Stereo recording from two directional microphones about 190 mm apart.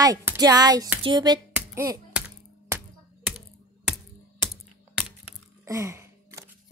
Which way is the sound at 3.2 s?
5° right (ahead or behind).